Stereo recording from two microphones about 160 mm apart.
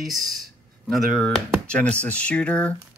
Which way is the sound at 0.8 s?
5° left (ahead or behind).